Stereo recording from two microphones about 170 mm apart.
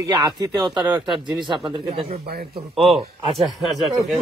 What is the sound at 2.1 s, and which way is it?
Speech, 65° right (ahead or behind).